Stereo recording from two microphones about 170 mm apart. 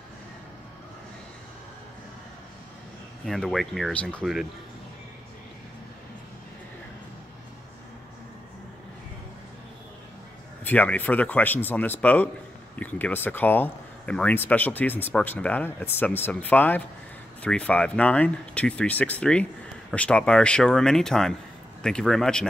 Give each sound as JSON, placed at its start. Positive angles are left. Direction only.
{"t": 3.3, "sound": "speech", "side_deg": 0}
{"t": 10.6, "sound": "speech", "side_deg": 10}